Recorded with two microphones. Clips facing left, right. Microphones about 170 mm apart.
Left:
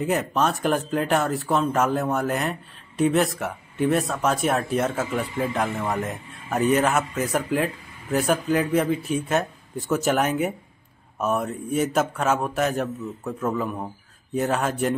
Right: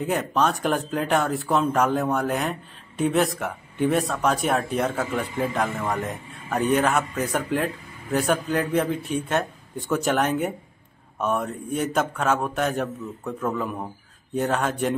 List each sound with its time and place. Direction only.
0.0 s speech: centre (ahead or behind)